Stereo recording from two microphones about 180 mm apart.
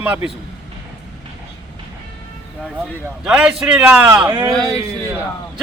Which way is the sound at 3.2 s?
5° right (ahead or behind).